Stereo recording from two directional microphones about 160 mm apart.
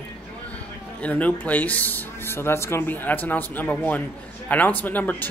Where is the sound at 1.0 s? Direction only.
10° left (ahead or behind).